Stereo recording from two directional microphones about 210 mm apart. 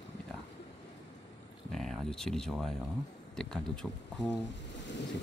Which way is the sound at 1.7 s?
Centre (ahead or behind).